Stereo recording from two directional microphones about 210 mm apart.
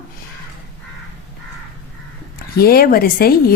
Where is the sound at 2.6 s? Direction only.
45° left (ahead or behind).